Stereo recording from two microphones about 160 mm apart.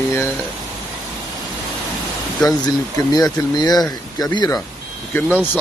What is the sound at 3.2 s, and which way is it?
Speech, 25° left (ahead or behind).